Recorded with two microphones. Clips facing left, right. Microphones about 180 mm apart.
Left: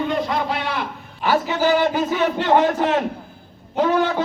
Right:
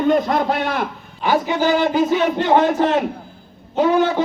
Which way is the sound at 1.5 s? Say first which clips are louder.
Even; 10° left (ahead or behind).